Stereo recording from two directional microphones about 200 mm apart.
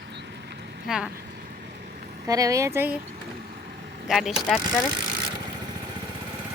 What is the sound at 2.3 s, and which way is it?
Speech, 15° right (ahead or behind).